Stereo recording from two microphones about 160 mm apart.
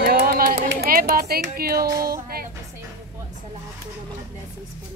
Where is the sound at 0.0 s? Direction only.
70° right (ahead or behind).